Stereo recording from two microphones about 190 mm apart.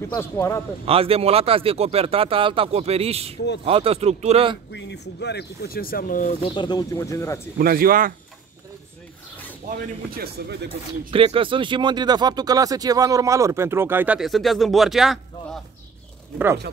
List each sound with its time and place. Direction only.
0.1 s speech: 15° left (ahead or behind)
0.8 s speech: 30° right (ahead or behind)
4.7 s speech: 65° left (ahead or behind); by 6.3 s 45° left (ahead or behind)
6.4 s speech: 25° left (ahead or behind)
7.5 s speech: 50° right (ahead or behind)
9.6 s speech: 50° right (ahead or behind)
11.1 s speech: 30° right (ahead or behind); by 15.6 s centre (ahead or behind)